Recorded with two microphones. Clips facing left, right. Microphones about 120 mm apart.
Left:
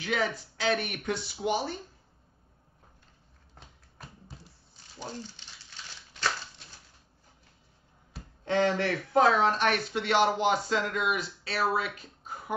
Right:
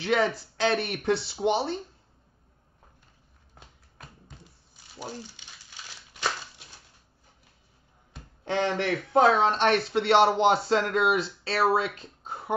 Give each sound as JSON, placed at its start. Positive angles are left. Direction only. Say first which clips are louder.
{"t": 0.0, "sound": "speech", "louder": "right 5 dB", "side_deg": -30}
{"t": 4.9, "sound": "speech", "louder": "right 1 dB", "side_deg": -10}
{"t": 6.1, "sound": "a sound", "louder": "right 1 dB", "side_deg": -15}
{"t": 8.5, "sound": "speech", "louder": "even", "side_deg": -20}